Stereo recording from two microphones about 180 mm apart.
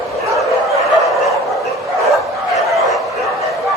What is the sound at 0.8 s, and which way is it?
Bow-wow, centre (ahead or behind).